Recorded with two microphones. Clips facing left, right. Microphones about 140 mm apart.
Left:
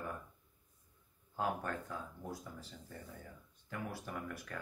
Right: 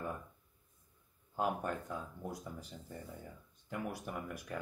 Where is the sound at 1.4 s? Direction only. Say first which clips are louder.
Right 2 dB; 15° right (ahead or behind).